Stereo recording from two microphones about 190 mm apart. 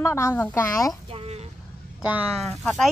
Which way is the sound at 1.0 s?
30° right (ahead or behind).